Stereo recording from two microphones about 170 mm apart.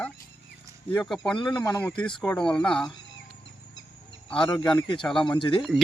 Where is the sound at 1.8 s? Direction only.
5° left (ahead or behind).